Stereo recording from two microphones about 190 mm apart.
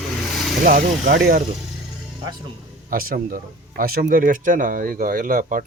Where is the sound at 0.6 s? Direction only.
50° right (ahead or behind).